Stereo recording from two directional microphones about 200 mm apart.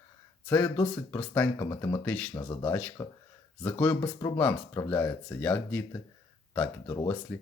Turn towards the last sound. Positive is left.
turn(degrees=15)  # may be behind; listen again after turning